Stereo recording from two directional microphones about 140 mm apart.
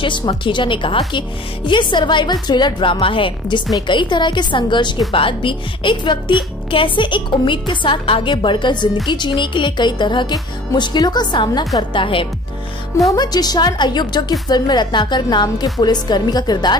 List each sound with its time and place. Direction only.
0.0 s speech: 35° left (ahead or behind)